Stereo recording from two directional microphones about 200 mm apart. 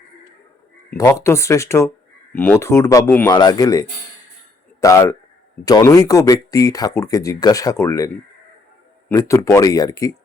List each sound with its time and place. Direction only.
0.9 s speech: 15° left (ahead or behind)